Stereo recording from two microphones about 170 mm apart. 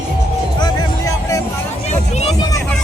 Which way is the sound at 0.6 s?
20° left (ahead or behind).